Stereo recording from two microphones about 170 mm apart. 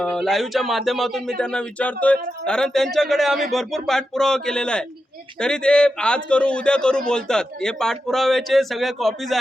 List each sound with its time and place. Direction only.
0.0 s speech: 5° left (ahead or behind)